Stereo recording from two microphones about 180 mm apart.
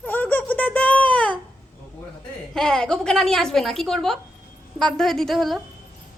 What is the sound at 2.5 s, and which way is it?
Speech, 5° left (ahead or behind).